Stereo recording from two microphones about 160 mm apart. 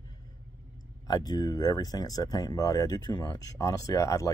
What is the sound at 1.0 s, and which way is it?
Speech, 25° left (ahead or behind).